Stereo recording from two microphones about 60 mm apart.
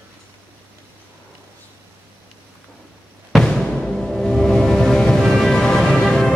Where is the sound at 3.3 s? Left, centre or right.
Centre.